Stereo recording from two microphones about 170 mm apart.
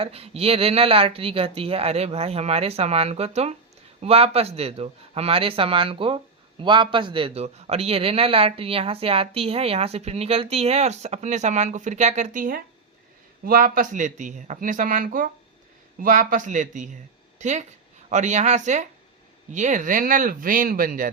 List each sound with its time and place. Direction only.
0.0 s a man's voice: 35° right (ahead or behind); by 21.1 s 55° right (ahead or behind)